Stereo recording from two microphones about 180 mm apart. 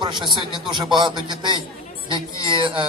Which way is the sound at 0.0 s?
25° right (ahead or behind).